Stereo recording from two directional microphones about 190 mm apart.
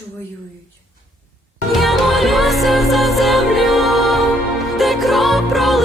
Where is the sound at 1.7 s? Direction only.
Centre (ahead or behind).